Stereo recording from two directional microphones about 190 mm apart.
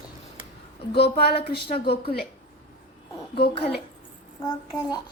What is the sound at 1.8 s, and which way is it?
Speech, 30° left (ahead or behind).